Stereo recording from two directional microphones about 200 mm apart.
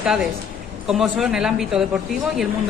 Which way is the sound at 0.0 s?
5° right (ahead or behind).